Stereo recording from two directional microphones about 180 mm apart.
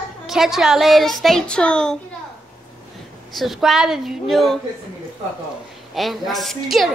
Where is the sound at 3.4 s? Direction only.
Centre (ahead or behind).